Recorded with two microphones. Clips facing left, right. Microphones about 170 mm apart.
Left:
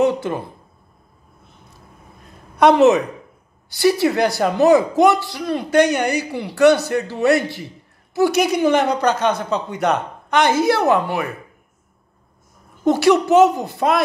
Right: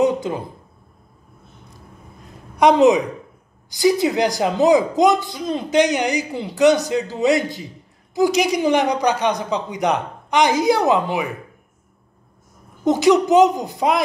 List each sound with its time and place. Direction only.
2.5 s a woman's voice: 15° right (ahead or behind)
12.8 s speech: 15° right (ahead or behind)